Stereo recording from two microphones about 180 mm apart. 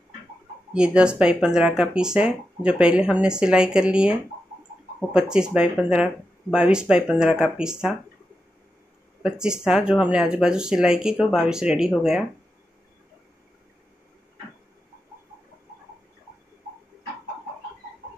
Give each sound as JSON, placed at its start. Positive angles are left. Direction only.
{"t": 0.7, "sound": "speech", "side_deg": -5}
{"t": 9.2, "sound": "speech", "side_deg": -5}